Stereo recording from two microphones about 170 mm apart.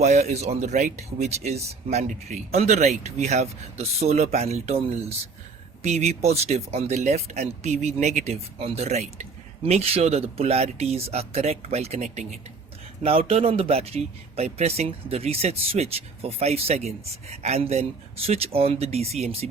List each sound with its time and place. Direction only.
0.0 s a man's voice: 40° right (ahead or behind)